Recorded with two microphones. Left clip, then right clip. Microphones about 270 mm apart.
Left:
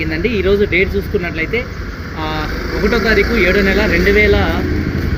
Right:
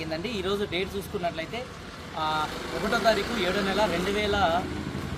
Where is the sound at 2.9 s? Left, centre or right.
Right.